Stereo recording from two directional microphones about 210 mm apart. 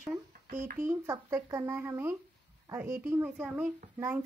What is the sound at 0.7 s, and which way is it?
Speech, 15° right (ahead or behind).